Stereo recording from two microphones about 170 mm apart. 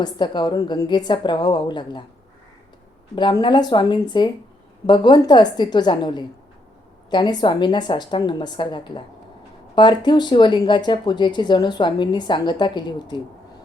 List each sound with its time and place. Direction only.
0.0 s speech: 25° left (ahead or behind)
3.2 s speech: 25° left (ahead or behind)